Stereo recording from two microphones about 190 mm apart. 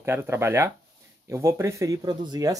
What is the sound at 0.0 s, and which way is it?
Speech, 15° right (ahead or behind).